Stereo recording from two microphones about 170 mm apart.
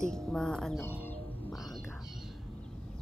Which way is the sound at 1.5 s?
Centre (ahead or behind).